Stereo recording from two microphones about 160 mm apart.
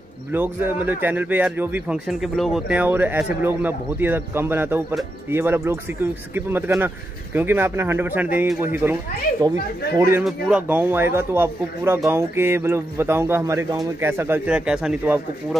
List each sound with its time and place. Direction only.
0.3 s speech: 15° right (ahead or behind)